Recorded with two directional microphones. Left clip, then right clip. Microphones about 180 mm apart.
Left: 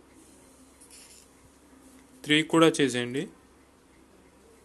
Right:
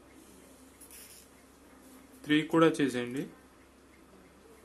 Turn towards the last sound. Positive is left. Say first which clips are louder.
# left 5 dB
turn(degrees=30)  # may be behind; listen again after turning